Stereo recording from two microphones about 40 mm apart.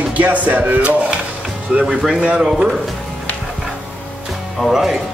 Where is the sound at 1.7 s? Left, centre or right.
Right.